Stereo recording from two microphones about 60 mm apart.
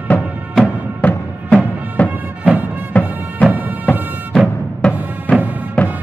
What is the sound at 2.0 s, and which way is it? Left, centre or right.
Music, right.